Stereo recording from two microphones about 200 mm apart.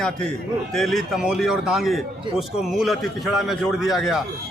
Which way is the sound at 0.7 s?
Centre (ahead or behind).